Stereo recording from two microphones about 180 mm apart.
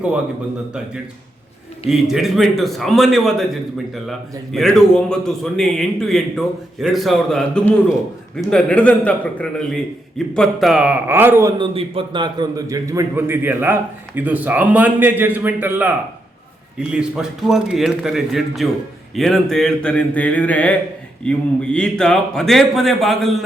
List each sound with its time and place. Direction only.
1.9 s a man's voice: centre (ahead or behind)
11.5 s a man's voice: 30° right (ahead or behind); by 23.4 s centre (ahead or behind)